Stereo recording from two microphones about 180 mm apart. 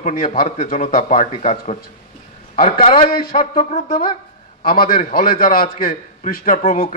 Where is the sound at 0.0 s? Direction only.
50° left (ahead or behind).